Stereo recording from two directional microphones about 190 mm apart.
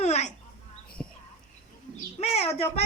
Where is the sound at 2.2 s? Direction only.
35° left (ahead or behind).